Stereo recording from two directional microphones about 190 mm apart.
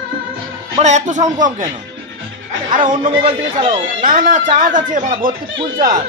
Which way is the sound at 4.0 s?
45° right (ahead or behind).